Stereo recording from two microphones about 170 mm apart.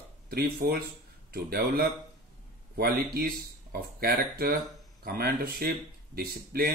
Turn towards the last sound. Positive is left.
turn(degrees=-65)  # may be behind; listen again after turning